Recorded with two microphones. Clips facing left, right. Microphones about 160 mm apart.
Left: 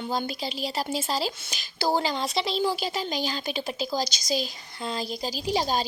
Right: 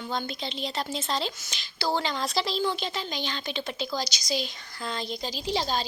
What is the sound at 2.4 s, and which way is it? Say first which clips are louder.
Speech: left 1 dB; centre (ahead or behind).